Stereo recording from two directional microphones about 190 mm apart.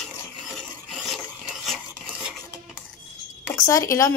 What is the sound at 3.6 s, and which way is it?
Speech, 15° left (ahead or behind).